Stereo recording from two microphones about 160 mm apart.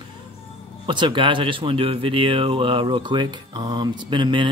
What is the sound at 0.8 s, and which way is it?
Speech, 30° right (ahead or behind).